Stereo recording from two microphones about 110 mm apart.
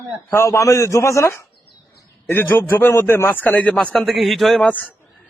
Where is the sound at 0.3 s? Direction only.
25° left (ahead or behind).